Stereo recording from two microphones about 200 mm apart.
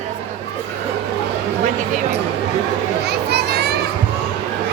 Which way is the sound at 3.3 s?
55° right (ahead or behind).